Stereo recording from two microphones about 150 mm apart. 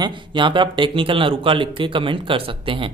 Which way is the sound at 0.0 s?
35° right (ahead or behind).